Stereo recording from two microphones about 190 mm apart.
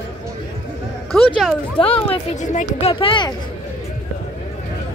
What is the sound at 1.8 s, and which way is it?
Speech, 30° left (ahead or behind).